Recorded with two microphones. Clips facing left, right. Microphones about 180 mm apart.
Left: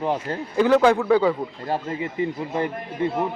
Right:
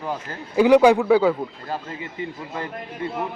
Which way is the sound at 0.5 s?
15° right (ahead or behind).